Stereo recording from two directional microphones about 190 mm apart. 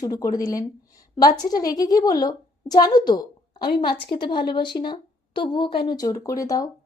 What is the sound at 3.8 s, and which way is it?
A woman's voice, 25° left (ahead or behind).